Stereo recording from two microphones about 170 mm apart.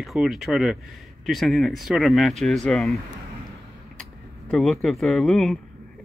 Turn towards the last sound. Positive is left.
turn(degrees=5)  # may be behind; listen again after turning